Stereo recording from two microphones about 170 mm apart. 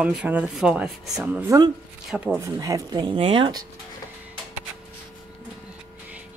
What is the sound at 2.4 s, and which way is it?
Speech, 20° right (ahead or behind).